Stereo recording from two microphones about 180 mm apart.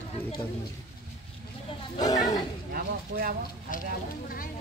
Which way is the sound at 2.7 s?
55° right (ahead or behind).